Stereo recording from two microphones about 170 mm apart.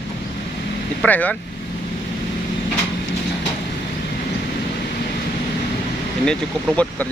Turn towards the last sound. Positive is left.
turn(degrees=5)  # may be behind; listen again after turning